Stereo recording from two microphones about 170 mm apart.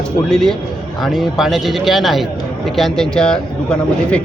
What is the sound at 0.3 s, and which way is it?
A man's voice, 5° left (ahead or behind).